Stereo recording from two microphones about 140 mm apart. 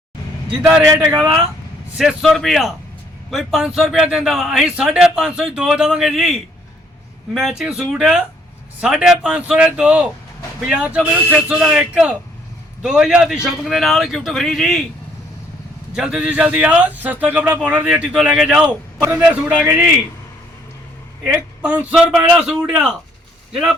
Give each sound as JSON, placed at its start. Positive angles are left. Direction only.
{"t": 0.8, "sound": "speech", "side_deg": -15}
{"t": 2.0, "sound": "a man's voice", "side_deg": 0}
{"t": 7.3, "sound": "a man's voice", "side_deg": -5}
{"t": 16.0, "sound": "speech", "side_deg": -5}
{"t": 21.6, "sound": "speech", "side_deg": -10}